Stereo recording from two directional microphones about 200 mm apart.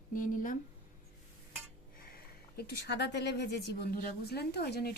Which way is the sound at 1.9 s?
50° left (ahead or behind).